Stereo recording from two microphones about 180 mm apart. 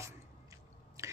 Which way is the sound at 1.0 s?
15° right (ahead or behind).